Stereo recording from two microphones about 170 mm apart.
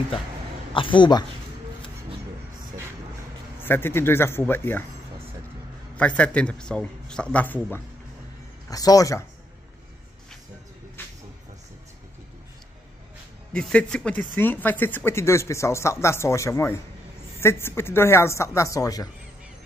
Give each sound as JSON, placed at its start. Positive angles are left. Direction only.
{"t": 0.7, "sound": "speech", "side_deg": 30}
{"t": 3.6, "sound": "speech", "side_deg": 15}
{"t": 5.9, "sound": "speech", "side_deg": 10}
{"t": 13.5, "sound": "speech", "side_deg": 5}